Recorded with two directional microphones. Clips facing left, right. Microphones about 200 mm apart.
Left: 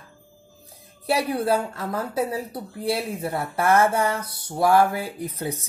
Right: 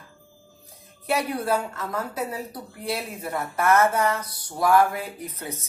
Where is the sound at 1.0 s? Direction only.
30° left (ahead or behind).